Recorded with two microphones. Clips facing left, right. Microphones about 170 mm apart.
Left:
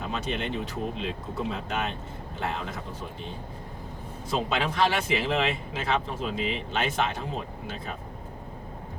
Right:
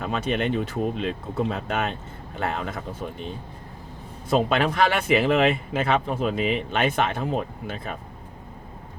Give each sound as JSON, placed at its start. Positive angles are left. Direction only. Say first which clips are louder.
{"t": 0.0, "sound": "speech", "louder": "right 6 dB", "side_deg": -60}
{"t": 4.3, "sound": "speech", "louder": "right 6 dB", "side_deg": -55}